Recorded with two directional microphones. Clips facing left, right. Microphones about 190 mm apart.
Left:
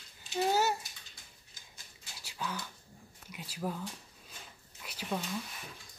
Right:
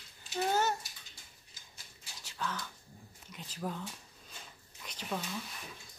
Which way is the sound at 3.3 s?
10° left (ahead or behind).